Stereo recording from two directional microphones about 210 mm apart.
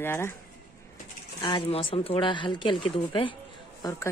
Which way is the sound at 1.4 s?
25° left (ahead or behind).